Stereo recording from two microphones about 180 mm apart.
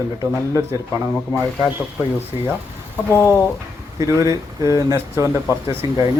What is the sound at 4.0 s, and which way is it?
Speech, 20° right (ahead or behind).